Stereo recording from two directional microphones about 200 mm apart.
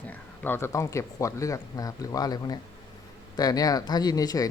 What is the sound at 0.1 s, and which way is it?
Speech, 10° left (ahead or behind).